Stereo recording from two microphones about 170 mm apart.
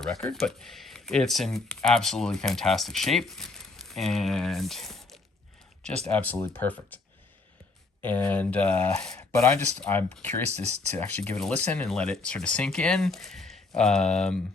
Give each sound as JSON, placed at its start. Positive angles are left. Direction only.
{"t": 0.0, "sound": "speech", "side_deg": 5}
{"t": 8.0, "sound": "speech", "side_deg": 10}
{"t": 10.5, "sound": "speech", "side_deg": -40}
{"t": 10.9, "sound": "speech", "side_deg": 10}